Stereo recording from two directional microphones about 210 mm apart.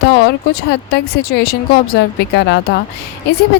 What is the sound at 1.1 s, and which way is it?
Speech, 50° left (ahead or behind).